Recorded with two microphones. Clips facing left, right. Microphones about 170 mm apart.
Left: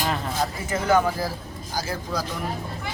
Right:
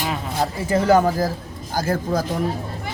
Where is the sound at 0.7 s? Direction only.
35° right (ahead or behind).